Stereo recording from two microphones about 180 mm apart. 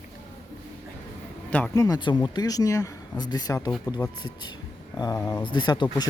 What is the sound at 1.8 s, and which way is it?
Speech, 25° left (ahead or behind).